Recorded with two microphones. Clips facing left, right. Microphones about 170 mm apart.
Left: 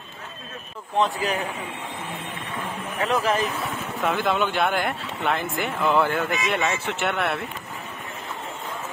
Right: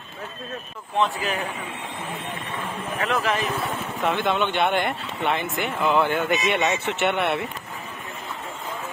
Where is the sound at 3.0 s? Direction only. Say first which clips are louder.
Left 2 dB; 40° left (ahead or behind).